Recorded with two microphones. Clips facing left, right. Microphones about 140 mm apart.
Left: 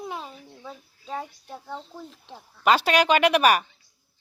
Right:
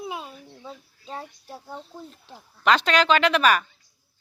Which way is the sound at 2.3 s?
10° left (ahead or behind).